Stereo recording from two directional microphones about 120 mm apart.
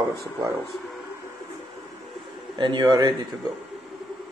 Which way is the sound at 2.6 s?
35° right (ahead or behind).